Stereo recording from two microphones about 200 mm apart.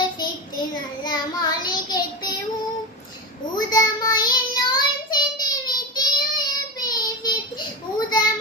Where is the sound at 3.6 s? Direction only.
20° left (ahead or behind).